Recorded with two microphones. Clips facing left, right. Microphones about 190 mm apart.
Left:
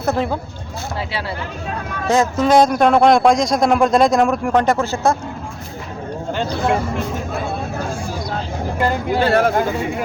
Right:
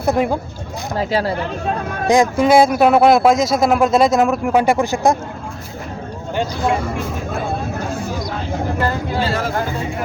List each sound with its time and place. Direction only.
0.0 s speech: 15° right (ahead or behind)
0.9 s speech: 40° right (ahead or behind)
2.0 s speech: 15° right (ahead or behind)
9.2 s speech: 60° left (ahead or behind)